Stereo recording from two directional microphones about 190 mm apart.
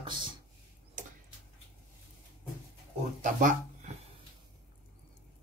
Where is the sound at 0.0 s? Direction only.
25° right (ahead or behind).